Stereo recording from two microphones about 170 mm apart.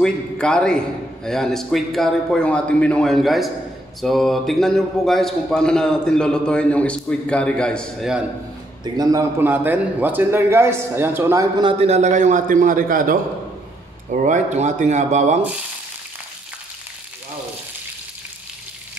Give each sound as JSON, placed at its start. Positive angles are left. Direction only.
{"t": 0.0, "sound": "a man's voice", "side_deg": 5}
{"t": 8.8, "sound": "a man's voice", "side_deg": -20}
{"t": 11.8, "sound": "a man's voice", "side_deg": -40}